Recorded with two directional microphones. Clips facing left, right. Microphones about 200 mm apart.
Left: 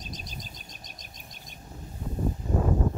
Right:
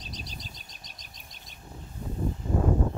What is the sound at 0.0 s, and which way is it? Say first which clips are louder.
Bird: left 1 dB; 45° left (ahead or behind).